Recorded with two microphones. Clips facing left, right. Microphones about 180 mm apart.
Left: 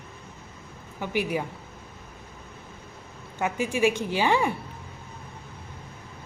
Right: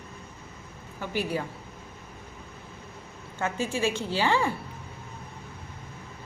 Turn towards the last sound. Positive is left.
turn(degrees=15)  # may be behind; listen again after turning